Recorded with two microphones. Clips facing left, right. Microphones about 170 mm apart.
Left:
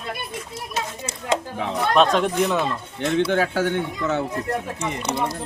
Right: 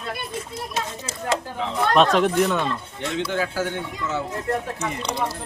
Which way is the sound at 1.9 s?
Centre (ahead or behind).